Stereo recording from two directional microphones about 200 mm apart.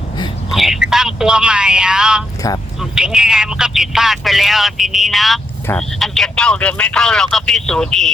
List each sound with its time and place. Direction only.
0.5 s speech: centre (ahead or behind)
2.4 s speech: 15° left (ahead or behind)
2.9 s speech: 5° right (ahead or behind)